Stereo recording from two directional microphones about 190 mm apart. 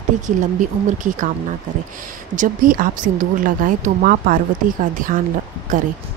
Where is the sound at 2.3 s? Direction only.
45° right (ahead or behind).